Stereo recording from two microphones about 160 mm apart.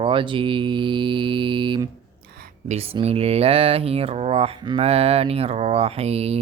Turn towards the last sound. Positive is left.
turn(degrees=-40)  # may be behind; listen again after turning